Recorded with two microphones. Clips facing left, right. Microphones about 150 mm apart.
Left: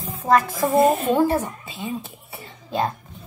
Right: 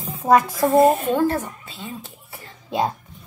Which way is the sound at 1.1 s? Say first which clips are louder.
Left 1 dB; 15° left (ahead or behind).